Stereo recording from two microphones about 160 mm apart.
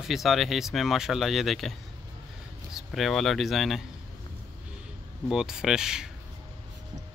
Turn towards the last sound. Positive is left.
turn(degrees=-5)  # may be behind; listen again after turning